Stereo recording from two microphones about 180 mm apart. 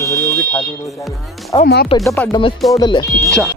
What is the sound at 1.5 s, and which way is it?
Speech, 20° left (ahead or behind).